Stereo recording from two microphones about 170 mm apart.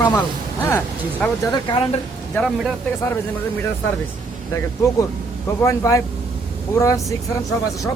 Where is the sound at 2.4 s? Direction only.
Centre (ahead or behind).